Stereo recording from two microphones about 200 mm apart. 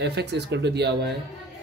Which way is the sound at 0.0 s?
55° right (ahead or behind).